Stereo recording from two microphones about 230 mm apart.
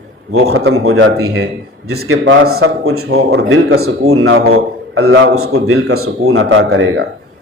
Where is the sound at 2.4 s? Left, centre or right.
Right.